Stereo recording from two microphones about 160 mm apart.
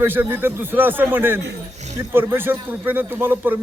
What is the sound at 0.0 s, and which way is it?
A man's voice, 15° right (ahead or behind).